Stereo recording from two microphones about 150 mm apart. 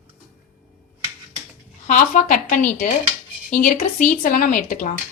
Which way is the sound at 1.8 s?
60° left (ahead or behind).